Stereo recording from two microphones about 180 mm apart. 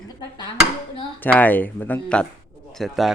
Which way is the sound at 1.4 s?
10° left (ahead or behind).